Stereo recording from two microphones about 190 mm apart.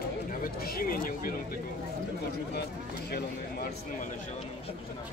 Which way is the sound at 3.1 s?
55° left (ahead or behind).